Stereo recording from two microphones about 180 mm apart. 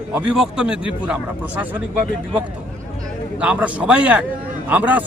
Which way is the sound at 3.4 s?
10° right (ahead or behind).